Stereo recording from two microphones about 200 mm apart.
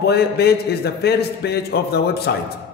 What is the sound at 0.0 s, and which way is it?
A man's voice, 55° left (ahead or behind).